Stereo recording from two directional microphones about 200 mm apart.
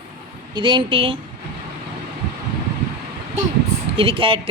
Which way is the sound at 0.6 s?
25° right (ahead or behind).